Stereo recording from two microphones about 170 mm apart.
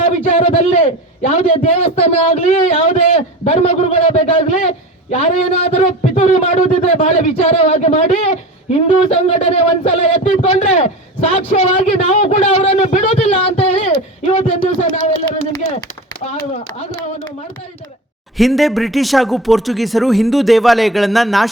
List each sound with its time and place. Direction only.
0.3 s a man's voice: 35° left (ahead or behind)
14.6 s a man's voice: 55° left (ahead or behind)
16.2 s speech: 40° left (ahead or behind)
18.3 s speech: centre (ahead or behind)